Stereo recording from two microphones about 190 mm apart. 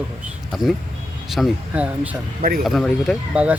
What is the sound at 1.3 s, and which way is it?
Speech, centre (ahead or behind).